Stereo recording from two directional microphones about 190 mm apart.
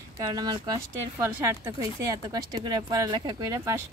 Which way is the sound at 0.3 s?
20° right (ahead or behind).